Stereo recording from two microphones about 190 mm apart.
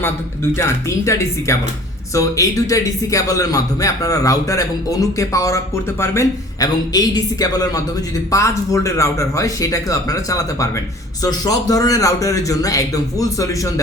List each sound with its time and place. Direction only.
0.5 s a man's voice: 15° left (ahead or behind)